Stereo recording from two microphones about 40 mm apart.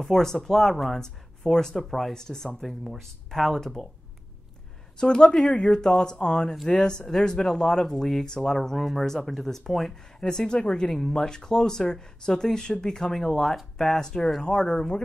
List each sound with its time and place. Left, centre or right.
0.0 s speech: centre
1.0 s speech: centre
2.8 s speech: centre
4.9 s speech: left
10.2 s speech: centre